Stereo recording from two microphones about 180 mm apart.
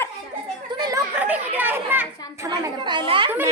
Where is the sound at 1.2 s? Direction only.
10° right (ahead or behind).